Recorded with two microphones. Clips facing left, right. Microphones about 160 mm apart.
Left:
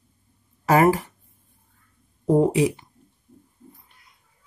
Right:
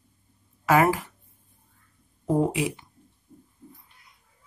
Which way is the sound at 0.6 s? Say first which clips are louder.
Left 3 dB; 40° left (ahead or behind).